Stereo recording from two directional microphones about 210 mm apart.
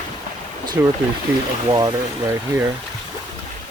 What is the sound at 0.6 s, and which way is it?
Boat, 20° right (ahead or behind).